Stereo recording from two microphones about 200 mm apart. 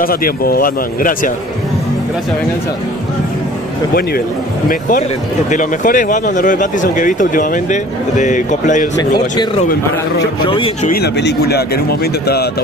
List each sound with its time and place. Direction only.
0.0 s speech: 45° left (ahead or behind)
4.6 s speech: 45° left (ahead or behind)
10.4 s speech: 25° left (ahead or behind)
10.9 s speech: 55° left (ahead or behind)